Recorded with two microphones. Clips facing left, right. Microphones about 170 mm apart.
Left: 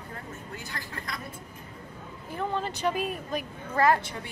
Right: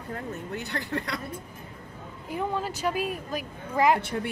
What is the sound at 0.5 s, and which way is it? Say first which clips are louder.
Speech: right 11 dB; 65° right (ahead or behind).